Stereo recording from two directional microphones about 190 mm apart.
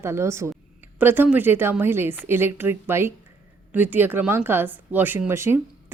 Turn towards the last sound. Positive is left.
turn(degrees=-15)  # may be behind; listen again after turning